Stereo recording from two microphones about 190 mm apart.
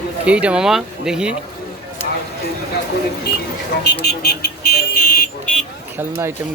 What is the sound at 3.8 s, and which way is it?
Speech, 60° left (ahead or behind).